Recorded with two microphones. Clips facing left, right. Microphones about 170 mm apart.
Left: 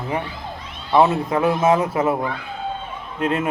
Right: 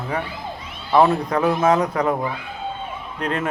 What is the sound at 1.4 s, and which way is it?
Speech, 5° left (ahead or behind).